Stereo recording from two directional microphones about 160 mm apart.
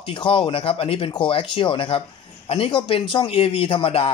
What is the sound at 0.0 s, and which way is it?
Speech, 35° left (ahead or behind).